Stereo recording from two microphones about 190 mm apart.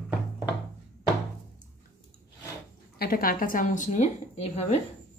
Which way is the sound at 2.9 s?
50° left (ahead or behind).